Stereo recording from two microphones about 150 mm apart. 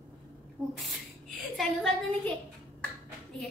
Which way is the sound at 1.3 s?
Centre (ahead or behind).